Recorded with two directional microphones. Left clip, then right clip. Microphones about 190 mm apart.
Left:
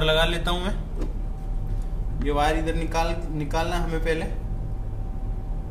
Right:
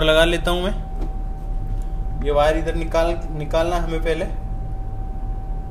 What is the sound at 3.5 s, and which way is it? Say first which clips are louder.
Speech: right 7 dB; 20° right (ahead or behind).